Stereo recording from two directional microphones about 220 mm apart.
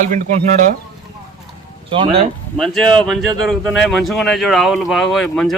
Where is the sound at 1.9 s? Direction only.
25° right (ahead or behind).